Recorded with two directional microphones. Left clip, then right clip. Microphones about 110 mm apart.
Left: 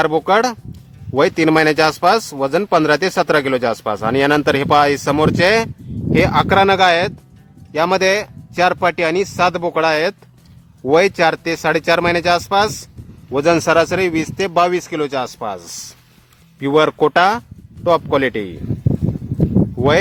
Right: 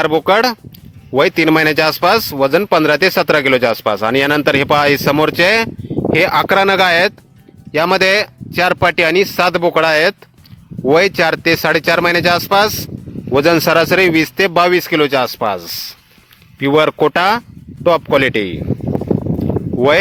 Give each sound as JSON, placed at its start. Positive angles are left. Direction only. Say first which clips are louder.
{"t": 0.0, "sound": "speech", "louder": "right 2 dB", "side_deg": -25}